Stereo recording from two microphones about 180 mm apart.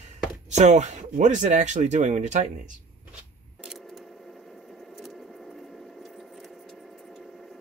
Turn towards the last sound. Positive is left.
turn(degrees=0)  # may be behind; listen again after turning